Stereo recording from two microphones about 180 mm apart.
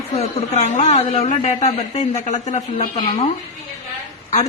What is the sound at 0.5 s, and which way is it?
A man's voice, 40° left (ahead or behind).